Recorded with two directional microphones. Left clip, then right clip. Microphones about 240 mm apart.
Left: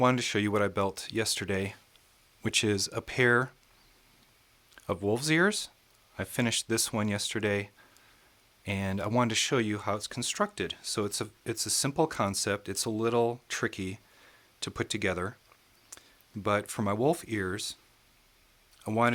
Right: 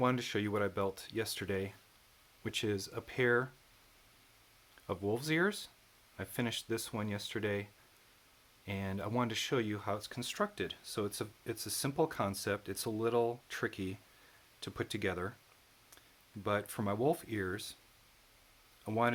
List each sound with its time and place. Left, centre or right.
0.0 s speech: left
4.7 s speech: left
16.4 s speech: left
18.9 s speech: left